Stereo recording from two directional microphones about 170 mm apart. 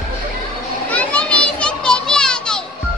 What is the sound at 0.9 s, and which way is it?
Children playing, 5° left (ahead or behind).